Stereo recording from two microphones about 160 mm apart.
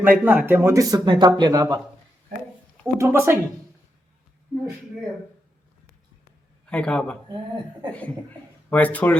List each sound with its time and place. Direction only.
0.0 s speech: 10° right (ahead or behind)
2.8 s speech: 15° right (ahead or behind)
4.5 s speech: 10° right (ahead or behind)
6.7 s speech: 5° left (ahead or behind)
8.7 s speech: 10° left (ahead or behind)